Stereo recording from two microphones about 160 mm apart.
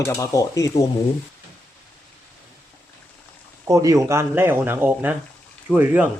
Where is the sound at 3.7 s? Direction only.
20° right (ahead or behind).